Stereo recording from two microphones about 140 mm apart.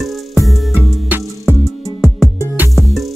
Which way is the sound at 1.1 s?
15° right (ahead or behind).